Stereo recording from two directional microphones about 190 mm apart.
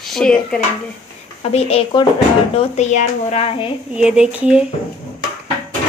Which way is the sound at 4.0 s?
5° right (ahead or behind).